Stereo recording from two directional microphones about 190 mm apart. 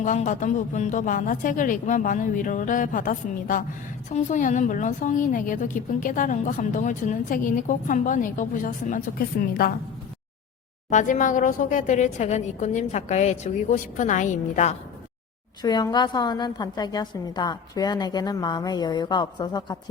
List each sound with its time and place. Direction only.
0.0 s a woman's voice: 40° left (ahead or behind)
10.8 s speech: 40° left (ahead or behind)
15.6 s a woman's voice: 20° left (ahead or behind)